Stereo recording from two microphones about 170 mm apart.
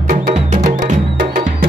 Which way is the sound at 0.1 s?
45° right (ahead or behind).